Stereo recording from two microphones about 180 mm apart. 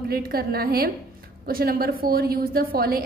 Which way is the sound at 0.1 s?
55° right (ahead or behind).